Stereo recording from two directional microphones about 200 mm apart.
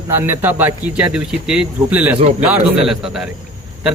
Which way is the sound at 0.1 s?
10° right (ahead or behind).